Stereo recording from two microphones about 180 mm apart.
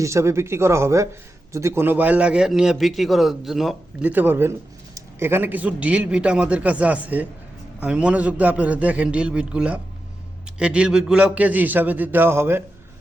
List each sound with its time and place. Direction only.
0.0 s a man's voice: 15° right (ahead or behind)